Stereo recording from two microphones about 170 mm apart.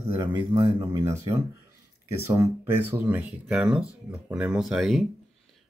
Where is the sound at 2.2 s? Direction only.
15° right (ahead or behind).